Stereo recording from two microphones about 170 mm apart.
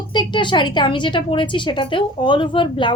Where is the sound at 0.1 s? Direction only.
25° left (ahead or behind).